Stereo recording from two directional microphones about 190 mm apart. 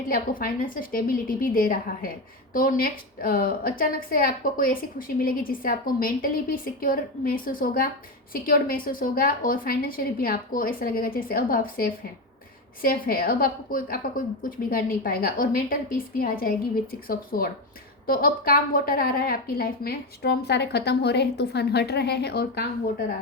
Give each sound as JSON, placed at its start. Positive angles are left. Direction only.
{"t": 0.1, "sound": "a woman's voice", "side_deg": 50}